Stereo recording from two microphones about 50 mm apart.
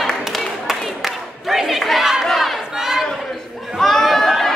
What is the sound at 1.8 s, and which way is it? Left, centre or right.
Crowd, centre.